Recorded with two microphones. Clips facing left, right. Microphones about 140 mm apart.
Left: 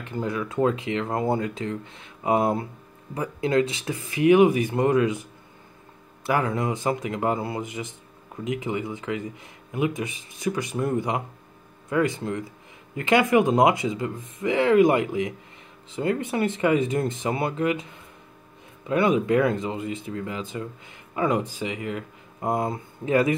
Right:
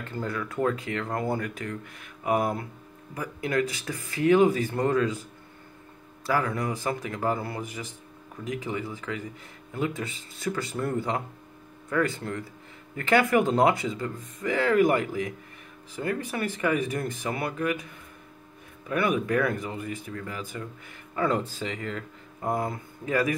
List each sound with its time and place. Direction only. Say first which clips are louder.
0.0 s speech: left 4 dB; 15° left (ahead or behind)
6.2 s speech: left 3 dB; 20° left (ahead or behind)
18.9 s speech: left 5 dB; 25° left (ahead or behind)